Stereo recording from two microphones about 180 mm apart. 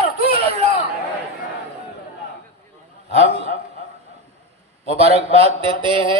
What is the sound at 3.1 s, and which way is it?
Speech, 35° right (ahead or behind).